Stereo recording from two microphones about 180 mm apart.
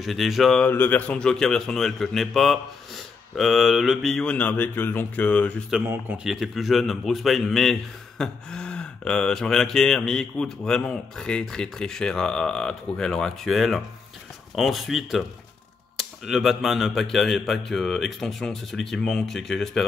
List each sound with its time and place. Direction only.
0.0 s speech: centre (ahead or behind)
5.7 s speech: 10° right (ahead or behind)